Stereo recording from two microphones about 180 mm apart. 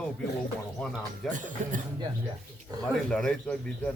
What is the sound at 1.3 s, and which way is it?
Speech, 45° right (ahead or behind).